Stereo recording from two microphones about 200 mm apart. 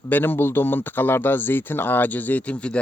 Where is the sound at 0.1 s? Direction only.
10° left (ahead or behind).